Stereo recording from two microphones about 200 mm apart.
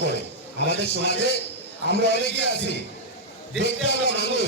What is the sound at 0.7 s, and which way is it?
A man's voice, 55° left (ahead or behind).